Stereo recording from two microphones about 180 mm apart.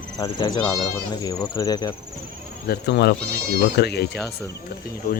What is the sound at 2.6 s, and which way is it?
Speech, 65° left (ahead or behind).